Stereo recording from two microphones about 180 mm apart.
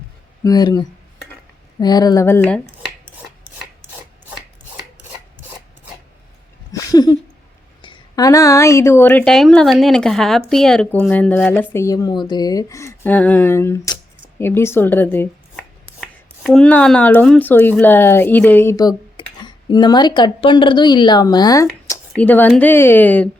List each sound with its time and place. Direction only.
0.4 s speech: 20° left (ahead or behind)
6.7 s a sound: 20° left (ahead or behind)
7.8 s speech: 25° left (ahead or behind); by 23.3 s 10° left (ahead or behind)